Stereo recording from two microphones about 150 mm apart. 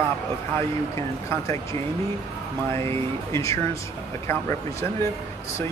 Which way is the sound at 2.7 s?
20° left (ahead or behind).